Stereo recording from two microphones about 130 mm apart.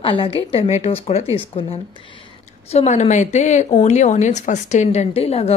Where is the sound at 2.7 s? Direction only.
60° left (ahead or behind).